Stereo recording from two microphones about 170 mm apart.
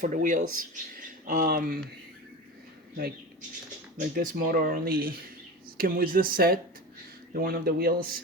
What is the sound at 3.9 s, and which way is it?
Speech, 50° right (ahead or behind).